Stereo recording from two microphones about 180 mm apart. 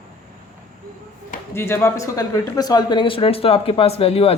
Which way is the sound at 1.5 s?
15° left (ahead or behind).